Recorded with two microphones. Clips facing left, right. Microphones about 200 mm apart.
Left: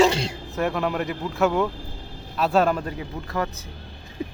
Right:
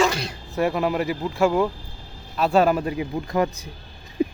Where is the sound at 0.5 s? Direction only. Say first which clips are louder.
Right 3 dB; centre (ahead or behind).